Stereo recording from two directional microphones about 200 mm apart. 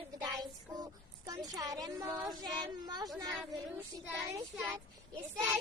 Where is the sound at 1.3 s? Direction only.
20° right (ahead or behind).